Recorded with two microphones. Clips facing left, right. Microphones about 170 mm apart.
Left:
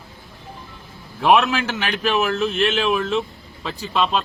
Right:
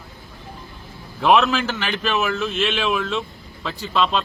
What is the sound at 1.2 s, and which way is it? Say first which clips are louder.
Speech: even; 5° left (ahead or behind).